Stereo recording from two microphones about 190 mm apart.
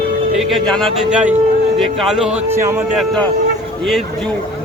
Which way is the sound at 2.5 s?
15° right (ahead or behind).